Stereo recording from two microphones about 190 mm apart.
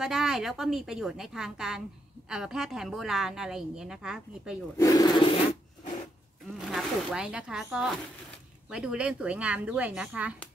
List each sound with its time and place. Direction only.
0.0 s a woman's voice: 5° right (ahead or behind)
4.7 s speech: 20° left (ahead or behind)
6.7 s a woman's voice: centre (ahead or behind)